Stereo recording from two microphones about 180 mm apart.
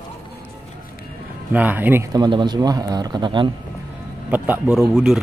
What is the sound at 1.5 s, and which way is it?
Speech, 10° right (ahead or behind).